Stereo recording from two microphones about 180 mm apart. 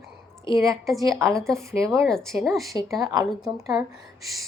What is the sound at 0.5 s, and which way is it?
Speech, 15° right (ahead or behind).